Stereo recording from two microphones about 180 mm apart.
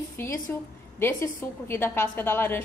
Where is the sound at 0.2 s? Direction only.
15° left (ahead or behind).